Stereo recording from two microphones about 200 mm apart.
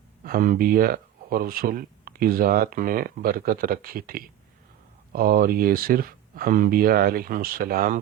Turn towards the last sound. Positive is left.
turn(degrees=-45)  # may be behind; listen again after turning